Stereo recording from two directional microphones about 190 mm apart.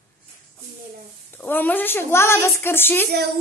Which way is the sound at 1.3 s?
10° left (ahead or behind).